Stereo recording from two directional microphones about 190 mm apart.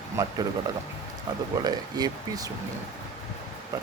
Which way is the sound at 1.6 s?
20° right (ahead or behind).